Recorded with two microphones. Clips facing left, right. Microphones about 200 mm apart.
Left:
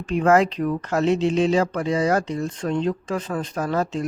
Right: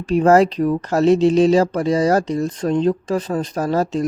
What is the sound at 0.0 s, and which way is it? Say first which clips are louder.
Speech: right 5 dB; 35° right (ahead or behind).